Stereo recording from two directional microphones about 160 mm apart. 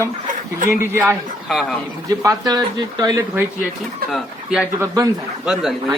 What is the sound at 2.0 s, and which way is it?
Speech, 25° right (ahead or behind).